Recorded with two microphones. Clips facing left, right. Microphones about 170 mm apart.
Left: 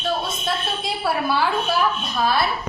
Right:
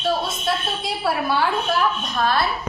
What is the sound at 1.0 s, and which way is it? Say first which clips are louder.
Speech: even; centre (ahead or behind).